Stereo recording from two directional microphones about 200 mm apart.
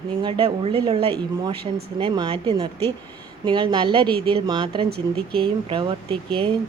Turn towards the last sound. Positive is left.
turn(degrees=-25)  # may be behind; listen again after turning